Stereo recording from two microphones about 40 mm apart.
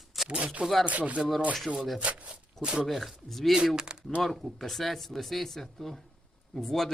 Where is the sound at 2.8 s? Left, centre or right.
Centre.